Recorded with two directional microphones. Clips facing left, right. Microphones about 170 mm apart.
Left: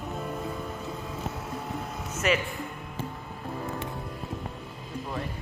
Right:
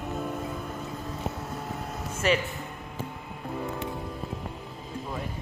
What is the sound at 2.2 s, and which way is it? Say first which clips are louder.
Speech: right 1 dB; 35° right (ahead or behind).